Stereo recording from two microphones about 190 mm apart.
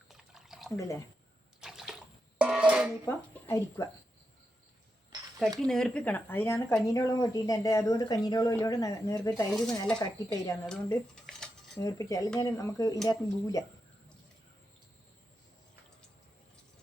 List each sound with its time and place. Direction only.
0.1 s a sound: centre (ahead or behind)
0.8 s speech: 15° left (ahead or behind)
1.6 s water: centre (ahead or behind)
2.4 s music: 5° right (ahead or behind)
3.1 s speech: 15° left (ahead or behind)
5.5 s speech: 5° left (ahead or behind)
10.7 s a sound: 5° left (ahead or behind)
11.8 s speech: 15° left (ahead or behind)